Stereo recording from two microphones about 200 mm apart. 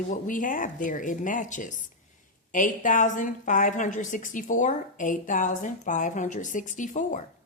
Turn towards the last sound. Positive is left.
turn(degrees=40)  # may be behind; listen again after turning